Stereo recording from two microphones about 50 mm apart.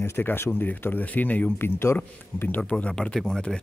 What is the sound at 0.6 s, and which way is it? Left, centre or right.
Speech, left.